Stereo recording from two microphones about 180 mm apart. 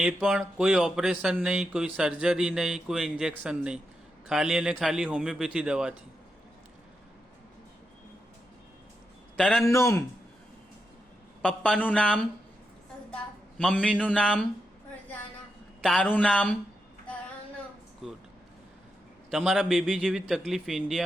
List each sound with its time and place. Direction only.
0.0 s speech: centre (ahead or behind)
9.4 s speech: centre (ahead or behind)
9.6 s speech: 15° left (ahead or behind)
11.4 s speech: 5° left (ahead or behind)
13.6 s speech: 5° left (ahead or behind)
15.8 s speech: 5° left (ahead or behind)
18.0 s speech: centre (ahead or behind)
19.3 s speech: 5° right (ahead or behind)